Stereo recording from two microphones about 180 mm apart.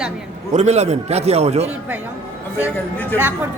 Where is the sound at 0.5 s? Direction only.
40° right (ahead or behind).